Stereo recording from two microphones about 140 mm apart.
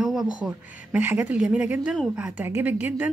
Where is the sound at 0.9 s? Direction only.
15° right (ahead or behind).